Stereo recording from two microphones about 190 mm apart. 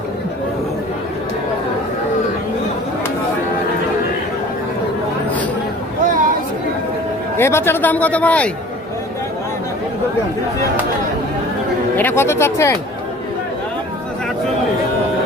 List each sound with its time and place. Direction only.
6.0 s a sound: 45° right (ahead or behind)
7.3 s speech: 15° left (ahead or behind)
11.9 s speech: 10° left (ahead or behind)